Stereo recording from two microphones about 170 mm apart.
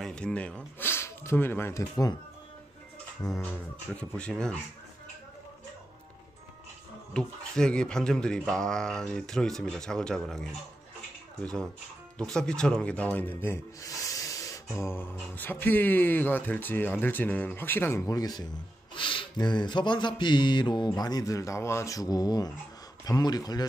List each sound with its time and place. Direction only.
0.0 s speech: 5° left (ahead or behind)
3.3 s speech: 5° left (ahead or behind)
7.2 s speech: 5° left (ahead or behind)
12.2 s speech: 5° left (ahead or behind); by 23.7 s 20° left (ahead or behind)